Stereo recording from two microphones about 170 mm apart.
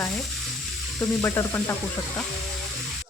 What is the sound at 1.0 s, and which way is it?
Speech, 15° left (ahead or behind).